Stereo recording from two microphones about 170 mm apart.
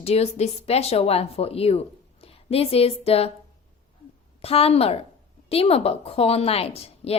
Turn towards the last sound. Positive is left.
turn(degrees=35)  # may be behind; listen again after turning